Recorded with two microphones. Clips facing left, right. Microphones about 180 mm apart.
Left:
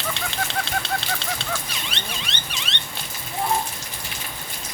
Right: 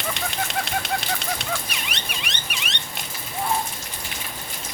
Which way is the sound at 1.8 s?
15° right (ahead or behind).